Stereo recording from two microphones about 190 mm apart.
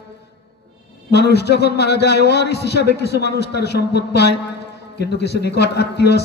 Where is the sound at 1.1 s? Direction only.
60° left (ahead or behind).